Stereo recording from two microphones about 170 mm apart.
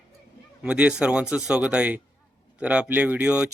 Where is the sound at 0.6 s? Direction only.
5° right (ahead or behind).